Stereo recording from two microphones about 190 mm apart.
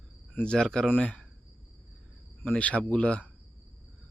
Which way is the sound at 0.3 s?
5° left (ahead or behind).